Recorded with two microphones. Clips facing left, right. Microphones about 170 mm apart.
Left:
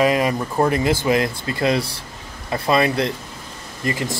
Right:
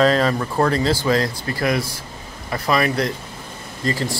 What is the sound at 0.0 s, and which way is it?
Speech, 15° left (ahead or behind).